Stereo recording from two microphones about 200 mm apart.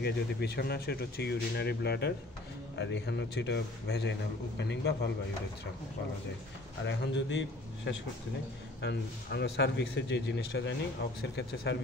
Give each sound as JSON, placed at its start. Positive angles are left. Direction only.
{"t": 0.0, "sound": "a man's voice", "side_deg": 55}
{"t": 6.9, "sound": "a man's voice", "side_deg": 65}